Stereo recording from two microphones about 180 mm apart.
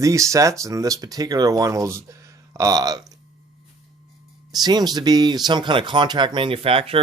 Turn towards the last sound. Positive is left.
turn(degrees=-30)  # may be behind; listen again after turning